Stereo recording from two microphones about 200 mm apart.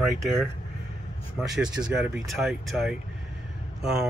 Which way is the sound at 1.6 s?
5° right (ahead or behind).